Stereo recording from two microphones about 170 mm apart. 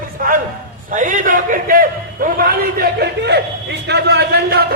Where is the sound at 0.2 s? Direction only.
55° right (ahead or behind).